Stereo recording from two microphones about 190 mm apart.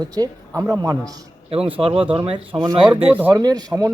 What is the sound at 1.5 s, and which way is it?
Speech, 5° right (ahead or behind).